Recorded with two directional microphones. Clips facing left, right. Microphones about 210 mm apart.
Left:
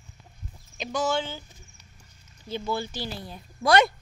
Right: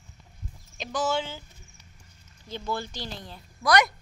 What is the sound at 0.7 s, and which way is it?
Speech, 5° right (ahead or behind).